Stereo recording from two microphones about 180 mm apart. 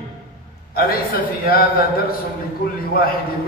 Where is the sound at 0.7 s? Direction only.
55° left (ahead or behind).